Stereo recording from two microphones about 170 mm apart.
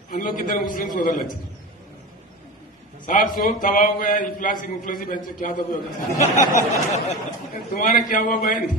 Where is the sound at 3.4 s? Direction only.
50° left (ahead or behind).